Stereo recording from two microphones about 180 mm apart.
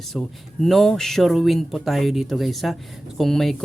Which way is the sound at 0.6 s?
Centre (ahead or behind).